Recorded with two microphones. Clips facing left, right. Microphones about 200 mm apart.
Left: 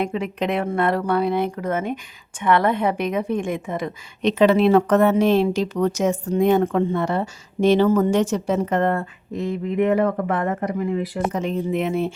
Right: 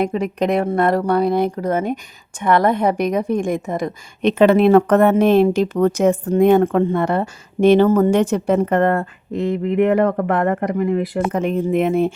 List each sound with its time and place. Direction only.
0.0 s a woman's voice: 40° right (ahead or behind)